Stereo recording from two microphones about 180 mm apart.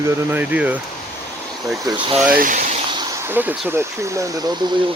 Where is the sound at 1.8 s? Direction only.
25° right (ahead or behind).